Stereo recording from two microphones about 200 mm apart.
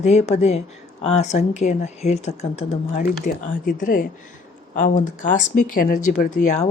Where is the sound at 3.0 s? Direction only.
45° left (ahead or behind).